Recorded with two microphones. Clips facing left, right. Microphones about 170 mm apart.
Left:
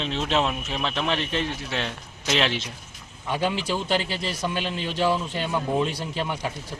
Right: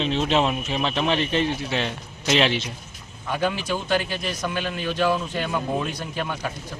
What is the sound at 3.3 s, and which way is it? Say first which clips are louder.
A man's voice: right 1 dB; 25° left (ahead or behind).